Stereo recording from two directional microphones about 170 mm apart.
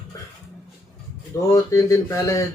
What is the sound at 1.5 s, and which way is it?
Speech, 20° left (ahead or behind).